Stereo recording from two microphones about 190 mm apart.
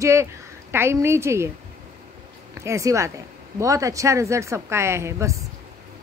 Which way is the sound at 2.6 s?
15° right (ahead or behind).